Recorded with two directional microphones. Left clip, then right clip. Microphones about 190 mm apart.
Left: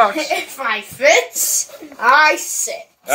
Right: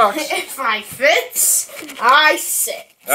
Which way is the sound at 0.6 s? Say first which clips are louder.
Right 1 dB; 40° left (ahead or behind).